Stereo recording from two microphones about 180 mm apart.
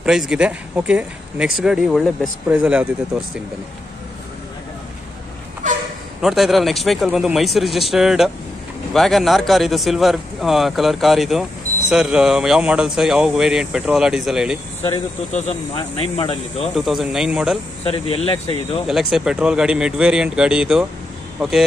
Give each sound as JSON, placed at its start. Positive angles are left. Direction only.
{"t": 0.0, "sound": "speech", "side_deg": -5}
{"t": 6.2, "sound": "speech", "side_deg": 0}
{"t": 15.3, "sound": "speech", "side_deg": 35}
{"t": 16.7, "sound": "speech", "side_deg": 0}
{"t": 17.8, "sound": "speech", "side_deg": 30}
{"t": 18.9, "sound": "speech", "side_deg": 0}